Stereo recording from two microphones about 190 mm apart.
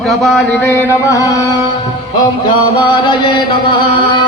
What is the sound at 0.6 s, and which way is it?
Music, 10° left (ahead or behind).